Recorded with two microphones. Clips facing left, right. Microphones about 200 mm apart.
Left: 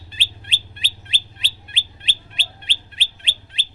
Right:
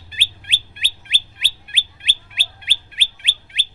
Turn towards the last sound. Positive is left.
turn(degrees=-10)  # may be behind; listen again after turning